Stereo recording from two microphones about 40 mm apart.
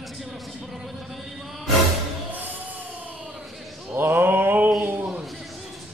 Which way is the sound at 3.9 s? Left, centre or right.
Right.